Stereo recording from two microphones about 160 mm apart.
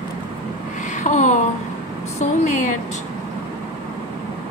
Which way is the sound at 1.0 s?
50° left (ahead or behind).